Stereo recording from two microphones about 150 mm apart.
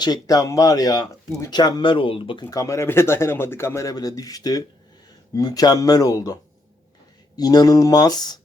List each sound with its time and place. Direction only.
0.0 s speech: 25° left (ahead or behind)
2.4 s speech: 25° left (ahead or behind)
7.3 s speech: 25° left (ahead or behind)